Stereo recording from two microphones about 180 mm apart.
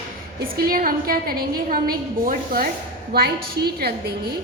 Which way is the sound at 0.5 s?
55° right (ahead or behind).